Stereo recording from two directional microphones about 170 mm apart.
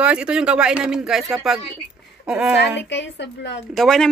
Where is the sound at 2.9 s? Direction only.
90° left.